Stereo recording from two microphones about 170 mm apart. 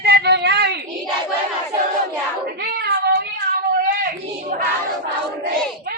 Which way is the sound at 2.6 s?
75° right (ahead or behind).